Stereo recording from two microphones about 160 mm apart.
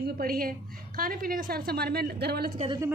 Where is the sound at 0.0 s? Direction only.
65° right (ahead or behind).